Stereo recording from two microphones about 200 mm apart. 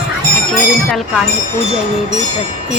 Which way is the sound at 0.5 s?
Centre (ahead or behind).